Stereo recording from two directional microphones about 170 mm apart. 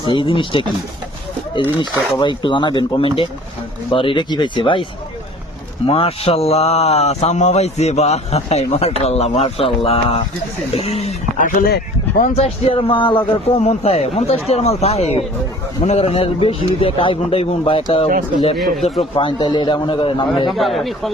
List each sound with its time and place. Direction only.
0.0 s speech: 30° left (ahead or behind)
2.1 s a man's voice: 30° left (ahead or behind)
11.3 s speech: 55° left (ahead or behind)
12.4 s speech: 35° left (ahead or behind)
18.5 s a man's voice: centre (ahead or behind)
19.1 s a man's voice: 30° left (ahead or behind)
20.5 s a man's voice: centre (ahead or behind)